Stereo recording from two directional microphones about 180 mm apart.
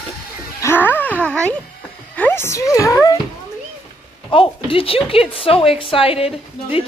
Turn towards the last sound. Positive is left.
turn(degrees=30)  # may be behind; listen again after turning